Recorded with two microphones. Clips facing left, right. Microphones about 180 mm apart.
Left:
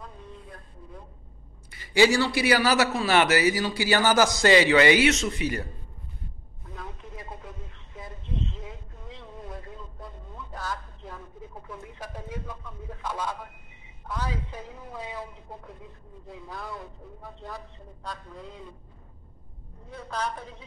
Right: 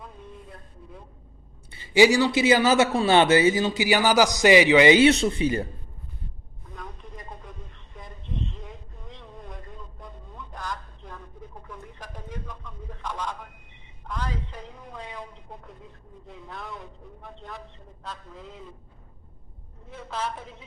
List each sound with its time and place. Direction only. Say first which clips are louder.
2.0 s a man's voice: right 3 dB; 15° right (ahead or behind)
6.7 s vehicle: left 1 dB; 5° left (ahead or behind)
9.2 s vehicle: left 3 dB; 5° left (ahead or behind)
11.6 s a man's voice: left 2 dB; 10° left (ahead or behind)
19.9 s a man's voice: even; 5° right (ahead or behind)